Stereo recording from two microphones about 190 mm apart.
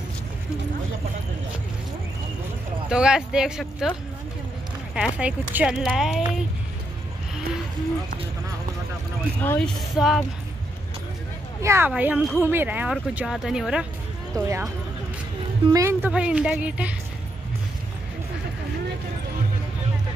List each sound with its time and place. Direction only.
2.9 s speech: 5° right (ahead or behind)
4.9 s speech: 5° right (ahead or behind)
9.4 s speech: 10° left (ahead or behind)
9.8 s speech: centre (ahead or behind)
11.6 s speech: 10° right (ahead or behind)
14.3 s speech: 15° right (ahead or behind)
15.7 s speech: 15° right (ahead or behind)